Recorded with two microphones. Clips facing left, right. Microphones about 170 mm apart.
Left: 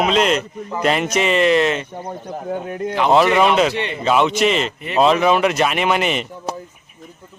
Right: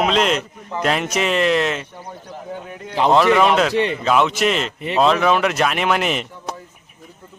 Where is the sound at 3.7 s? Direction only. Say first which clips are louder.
Right 5 dB; 35° right (ahead or behind).